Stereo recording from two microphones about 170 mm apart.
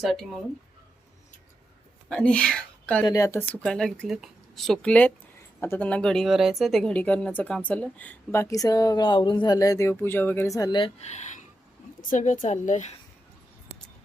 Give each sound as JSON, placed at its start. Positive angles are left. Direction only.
{"t": 0.0, "sound": "speech", "side_deg": 0}
{"t": 2.0, "sound": "speech", "side_deg": 5}
{"t": 3.1, "sound": "speech", "side_deg": 20}
{"t": 11.0, "sound": "a woman's voice", "side_deg": 45}